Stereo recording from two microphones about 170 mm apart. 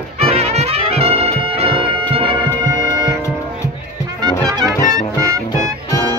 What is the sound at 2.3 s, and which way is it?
Music, 10° left (ahead or behind).